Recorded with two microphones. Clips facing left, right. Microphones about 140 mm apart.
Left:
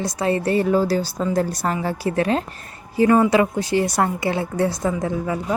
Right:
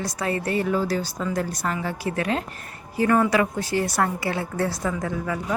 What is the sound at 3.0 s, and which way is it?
A woman's voice, 20° left (ahead or behind).